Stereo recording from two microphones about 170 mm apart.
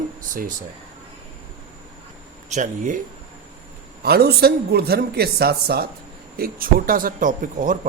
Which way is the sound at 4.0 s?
70° right (ahead or behind).